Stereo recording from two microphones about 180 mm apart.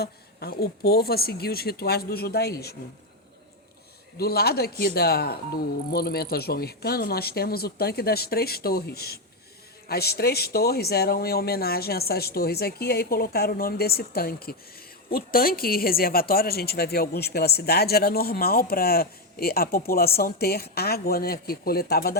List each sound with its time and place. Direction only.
0.0 s speech: 60° left (ahead or behind)
4.2 s speech: 60° left (ahead or behind)